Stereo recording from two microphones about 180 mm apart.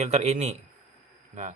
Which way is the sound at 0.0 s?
40° right (ahead or behind).